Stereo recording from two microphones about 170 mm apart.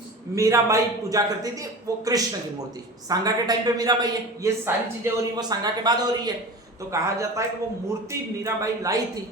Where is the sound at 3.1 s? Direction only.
20° right (ahead or behind).